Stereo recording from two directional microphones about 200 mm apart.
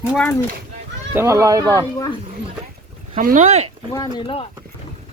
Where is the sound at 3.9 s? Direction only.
25° left (ahead or behind).